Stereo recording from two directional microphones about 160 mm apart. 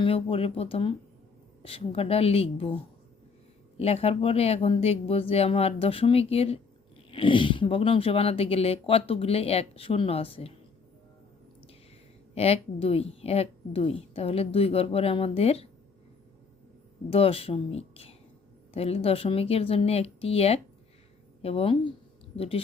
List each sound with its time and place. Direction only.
0.0 s speech: 35° left (ahead or behind)
3.8 s speech: 40° left (ahead or behind)
12.3 s speech: 40° left (ahead or behind)
17.1 s speech: 35° left (ahead or behind)